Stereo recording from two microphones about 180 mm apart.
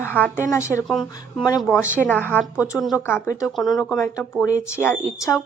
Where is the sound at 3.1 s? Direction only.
15° left (ahead or behind).